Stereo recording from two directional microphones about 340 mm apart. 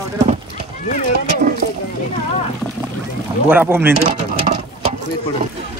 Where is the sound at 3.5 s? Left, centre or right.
Centre.